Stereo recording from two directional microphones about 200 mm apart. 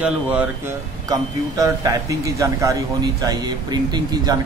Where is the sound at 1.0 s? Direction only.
20° right (ahead or behind).